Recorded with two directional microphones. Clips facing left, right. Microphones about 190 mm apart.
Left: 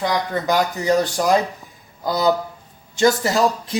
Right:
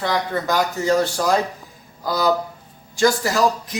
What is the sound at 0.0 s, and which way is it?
Speech, 15° left (ahead or behind).